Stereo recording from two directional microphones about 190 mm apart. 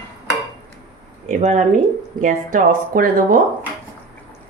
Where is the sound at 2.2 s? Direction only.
45° right (ahead or behind).